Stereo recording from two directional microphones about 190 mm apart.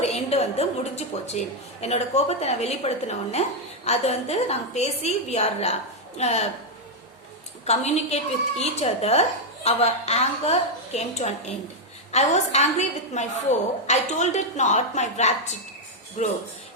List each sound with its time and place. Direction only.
0.0 s a woman's voice: 35° left (ahead or behind)
7.6 s a woman's voice: 35° left (ahead or behind)